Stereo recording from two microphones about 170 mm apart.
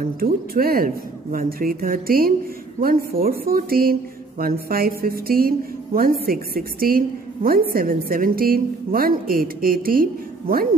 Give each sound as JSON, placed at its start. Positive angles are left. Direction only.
{"t": 0.2, "sound": "a woman's voice", "side_deg": -60}